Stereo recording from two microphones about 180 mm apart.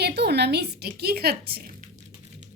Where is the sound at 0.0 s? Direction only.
65° right (ahead or behind).